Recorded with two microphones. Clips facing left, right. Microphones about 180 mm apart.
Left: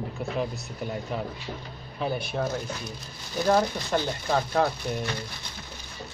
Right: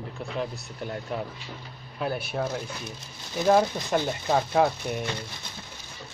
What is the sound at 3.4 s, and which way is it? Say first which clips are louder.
Speech: right 2 dB; 15° right (ahead or behind).